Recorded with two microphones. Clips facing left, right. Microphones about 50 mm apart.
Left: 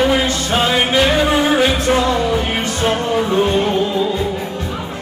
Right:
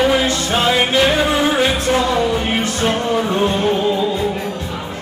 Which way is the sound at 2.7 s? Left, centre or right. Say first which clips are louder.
Left 3 dB; centre.